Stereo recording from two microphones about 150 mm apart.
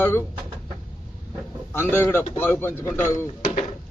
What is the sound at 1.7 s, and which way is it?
A man's voice, 15° left (ahead or behind).